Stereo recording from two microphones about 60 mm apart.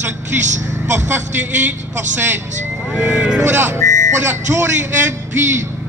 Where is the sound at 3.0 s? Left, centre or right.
Centre.